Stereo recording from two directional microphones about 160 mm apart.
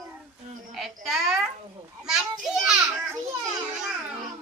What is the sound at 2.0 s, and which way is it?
Children playing, 5° right (ahead or behind).